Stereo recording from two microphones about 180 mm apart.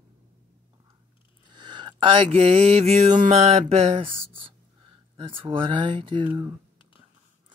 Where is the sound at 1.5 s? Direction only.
25° right (ahead or behind).